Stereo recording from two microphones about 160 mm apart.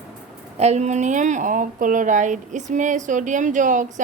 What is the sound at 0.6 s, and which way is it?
Speech, 45° right (ahead or behind).